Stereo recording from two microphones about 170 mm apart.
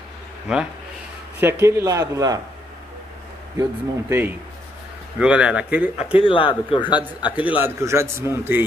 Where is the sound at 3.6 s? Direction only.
15° right (ahead or behind).